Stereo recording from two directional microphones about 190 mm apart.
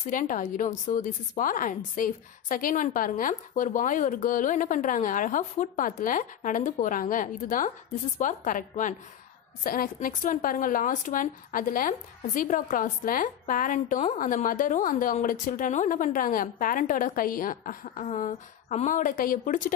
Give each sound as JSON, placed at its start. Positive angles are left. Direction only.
{"t": 0.0, "sound": "speech", "side_deg": 45}